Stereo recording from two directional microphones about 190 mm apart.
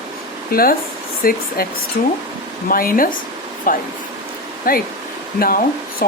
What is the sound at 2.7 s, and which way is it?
Speech, 50° left (ahead or behind).